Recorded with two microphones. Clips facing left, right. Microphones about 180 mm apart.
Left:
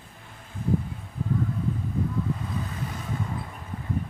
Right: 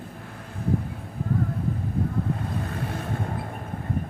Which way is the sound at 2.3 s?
60° right (ahead or behind).